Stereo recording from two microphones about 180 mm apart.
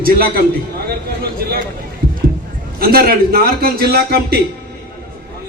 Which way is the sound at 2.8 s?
60° right (ahead or behind).